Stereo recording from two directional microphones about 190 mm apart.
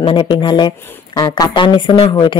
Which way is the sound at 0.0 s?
25° left (ahead or behind).